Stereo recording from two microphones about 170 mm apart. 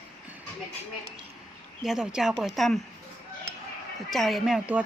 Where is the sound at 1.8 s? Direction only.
Centre (ahead or behind).